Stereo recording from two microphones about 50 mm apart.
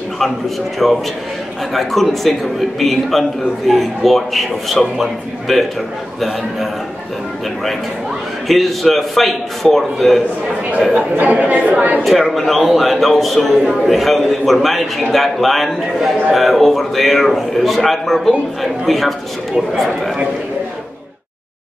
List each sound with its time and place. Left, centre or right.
0.8 s a man's voice: centre
8.5 s a man's voice: centre
10.9 s speech: right
12.0 s a man's voice: centre